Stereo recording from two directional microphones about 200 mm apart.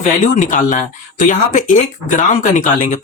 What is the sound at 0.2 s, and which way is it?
Speech, 40° left (ahead or behind).